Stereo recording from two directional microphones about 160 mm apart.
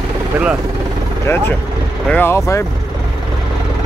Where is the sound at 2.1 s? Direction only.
15° left (ahead or behind).